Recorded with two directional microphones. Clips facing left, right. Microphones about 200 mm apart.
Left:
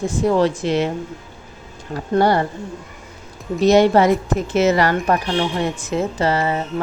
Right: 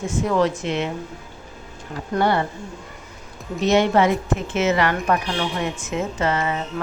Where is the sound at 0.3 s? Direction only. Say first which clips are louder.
Left 4 dB; 30° left (ahead or behind).